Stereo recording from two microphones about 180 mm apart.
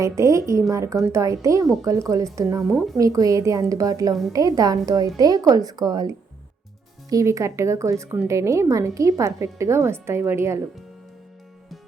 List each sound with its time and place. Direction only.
0.0 s a woman's voice: 15° right (ahead or behind)
2.7 s speech: centre (ahead or behind)
3.0 s a woman's voice: 20° right (ahead or behind)